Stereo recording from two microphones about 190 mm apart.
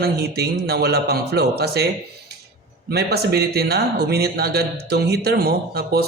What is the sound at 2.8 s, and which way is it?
Speech, 60° right (ahead or behind).